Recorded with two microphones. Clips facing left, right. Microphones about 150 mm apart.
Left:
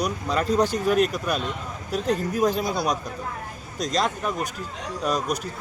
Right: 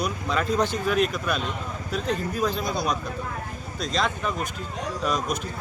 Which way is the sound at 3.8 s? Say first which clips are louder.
Left 2 dB; 40° left (ahead or behind).